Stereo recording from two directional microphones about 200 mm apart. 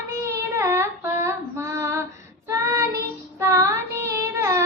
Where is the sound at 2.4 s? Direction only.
15° right (ahead or behind).